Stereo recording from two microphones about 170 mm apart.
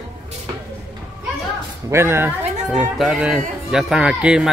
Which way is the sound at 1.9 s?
15° right (ahead or behind).